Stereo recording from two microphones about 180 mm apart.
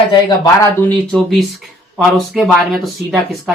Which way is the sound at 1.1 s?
Centre (ahead or behind).